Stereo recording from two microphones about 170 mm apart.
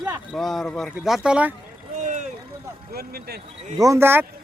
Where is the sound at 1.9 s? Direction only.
45° right (ahead or behind).